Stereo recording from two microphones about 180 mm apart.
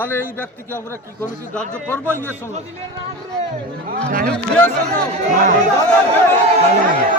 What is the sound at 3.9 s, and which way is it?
Speech, 55° right (ahead or behind).